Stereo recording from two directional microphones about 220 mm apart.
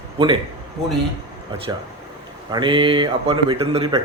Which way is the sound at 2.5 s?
20° right (ahead or behind).